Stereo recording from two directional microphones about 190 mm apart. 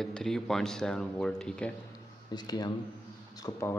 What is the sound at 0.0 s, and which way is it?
Speech, centre (ahead or behind).